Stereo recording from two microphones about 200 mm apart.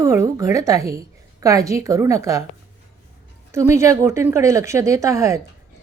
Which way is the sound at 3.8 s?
15° right (ahead or behind).